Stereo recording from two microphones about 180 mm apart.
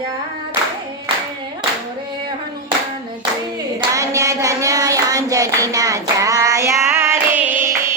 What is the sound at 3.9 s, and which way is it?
Hands, 15° right (ahead or behind).